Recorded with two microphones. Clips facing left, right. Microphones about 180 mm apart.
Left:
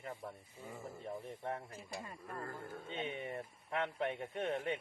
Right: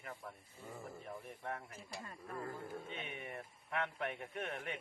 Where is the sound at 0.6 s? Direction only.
Centre (ahead or behind).